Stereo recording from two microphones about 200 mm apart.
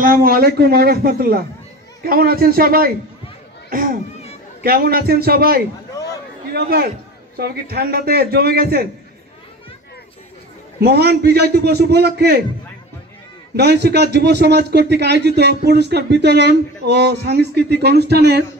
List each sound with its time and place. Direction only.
0.0 s a man's voice: 45° right (ahead or behind)
10.8 s a man's voice: 50° right (ahead or behind)
13.6 s a man's voice: 55° right (ahead or behind)